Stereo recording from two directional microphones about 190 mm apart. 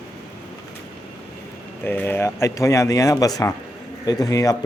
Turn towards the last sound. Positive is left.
turn(degrees=20)  # may be behind; listen again after turning